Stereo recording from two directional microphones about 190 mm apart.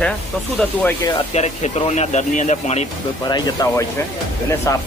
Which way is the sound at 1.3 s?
35° left (ahead or behind).